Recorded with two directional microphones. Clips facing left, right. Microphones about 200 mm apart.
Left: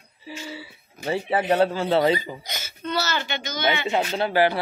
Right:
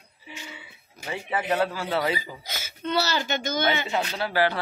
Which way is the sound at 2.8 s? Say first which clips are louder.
Right 1 dB; 30° right (ahead or behind).